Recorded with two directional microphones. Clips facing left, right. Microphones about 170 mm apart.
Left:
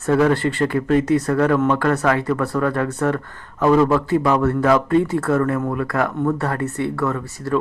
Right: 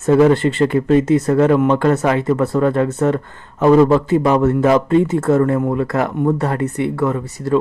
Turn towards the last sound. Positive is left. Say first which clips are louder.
# right 4 dB
turn(degrees=-20)  # may be behind; listen again after turning